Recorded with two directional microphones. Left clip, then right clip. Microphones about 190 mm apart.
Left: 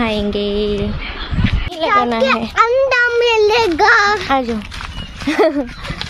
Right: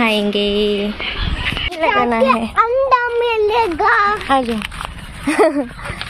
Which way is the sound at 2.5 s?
30° left (ahead or behind).